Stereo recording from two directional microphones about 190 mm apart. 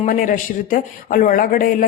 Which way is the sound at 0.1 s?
45° left (ahead or behind).